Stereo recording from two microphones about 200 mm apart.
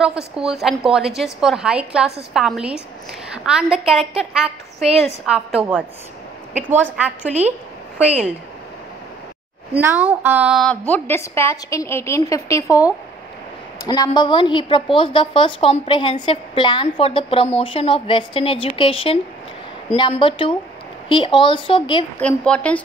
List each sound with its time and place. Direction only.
0.0 s a woman's voice: 5° right (ahead or behind)
7.2 s a woman's voice: 35° right (ahead or behind)
9.8 s a woman's voice: 10° right (ahead or behind)
10.9 s a woman's voice: 10° left (ahead or behind)
13.8 s a woman's voice: 20° left (ahead or behind)
22.2 s a woman's voice: 5° left (ahead or behind)